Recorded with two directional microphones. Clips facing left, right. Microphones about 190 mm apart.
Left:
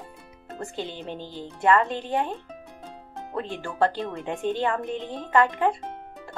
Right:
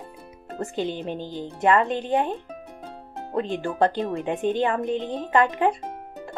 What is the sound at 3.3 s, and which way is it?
Speech, 20° right (ahead or behind).